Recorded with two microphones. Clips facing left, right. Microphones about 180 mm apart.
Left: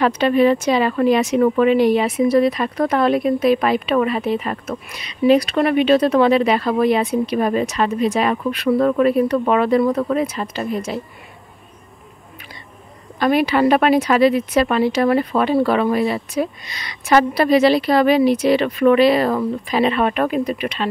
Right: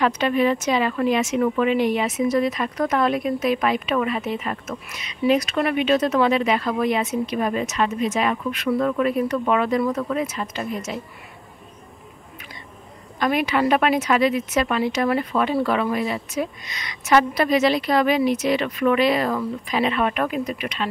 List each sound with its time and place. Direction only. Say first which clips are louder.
0.0 s speech: left 5 dB; 35° left (ahead or behind)
13.2 s speech: left 5 dB; 35° left (ahead or behind)